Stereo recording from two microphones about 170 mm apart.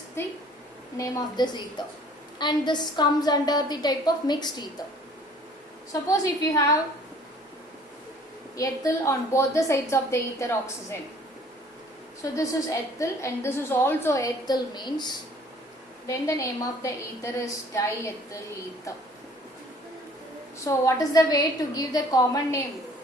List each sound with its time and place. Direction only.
0.9 s a woman's voice: 20° left (ahead or behind)
5.9 s a woman's voice: 20° left (ahead or behind)
8.5 s a woman's voice: 20° left (ahead or behind)
12.2 s a woman's voice: 20° left (ahead or behind)
20.7 s a woman's voice: 20° left (ahead or behind)